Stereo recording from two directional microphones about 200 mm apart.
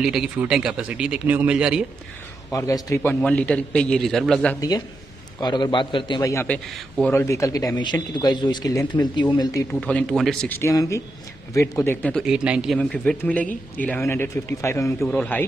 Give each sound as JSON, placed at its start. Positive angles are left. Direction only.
{"t": 0.0, "sound": "speech", "side_deg": 0}
{"t": 2.5, "sound": "speech", "side_deg": 15}
{"t": 4.6, "sound": "a man's voice", "side_deg": 20}
{"t": 9.7, "sound": "speech", "side_deg": 5}